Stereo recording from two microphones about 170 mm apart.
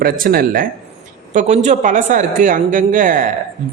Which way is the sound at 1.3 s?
45° right (ahead or behind).